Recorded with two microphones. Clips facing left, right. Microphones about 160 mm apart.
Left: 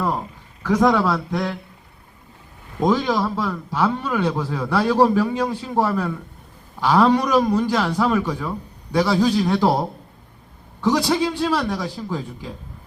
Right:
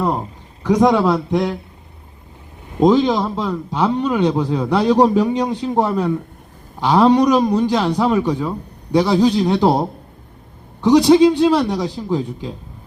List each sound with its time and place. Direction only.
0.0 s a man's voice: 20° right (ahead or behind)
2.7 s a man's voice: 20° right (ahead or behind)